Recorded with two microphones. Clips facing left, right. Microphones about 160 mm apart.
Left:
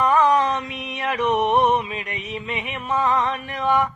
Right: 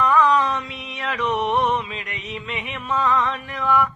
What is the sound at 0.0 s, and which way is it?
Music, 15° left (ahead or behind).